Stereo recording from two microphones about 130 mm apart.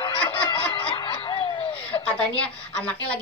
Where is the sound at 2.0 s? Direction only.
10° left (ahead or behind).